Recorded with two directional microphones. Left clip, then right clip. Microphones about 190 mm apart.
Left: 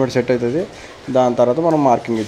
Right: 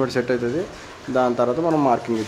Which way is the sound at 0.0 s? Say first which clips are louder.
Left 5 dB; 20° left (ahead or behind).